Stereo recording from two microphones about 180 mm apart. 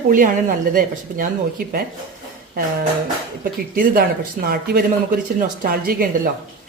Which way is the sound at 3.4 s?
50° right (ahead or behind).